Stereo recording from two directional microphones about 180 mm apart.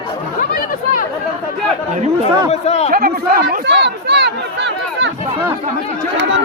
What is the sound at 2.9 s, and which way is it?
Speech, 55° right (ahead or behind).